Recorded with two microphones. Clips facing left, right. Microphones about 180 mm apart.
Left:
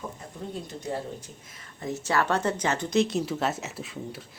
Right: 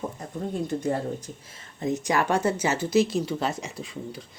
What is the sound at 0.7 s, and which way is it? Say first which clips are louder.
Speech: right 11 dB; 60° right (ahead or behind).